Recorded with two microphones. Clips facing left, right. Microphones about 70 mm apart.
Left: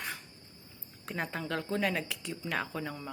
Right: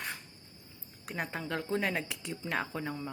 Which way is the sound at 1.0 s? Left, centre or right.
Centre.